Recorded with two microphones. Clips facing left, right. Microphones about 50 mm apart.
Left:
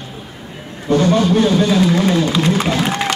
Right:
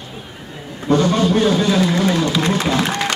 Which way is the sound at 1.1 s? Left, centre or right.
Right.